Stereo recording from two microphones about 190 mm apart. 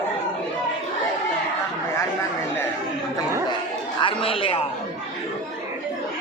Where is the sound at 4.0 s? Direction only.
25° left (ahead or behind).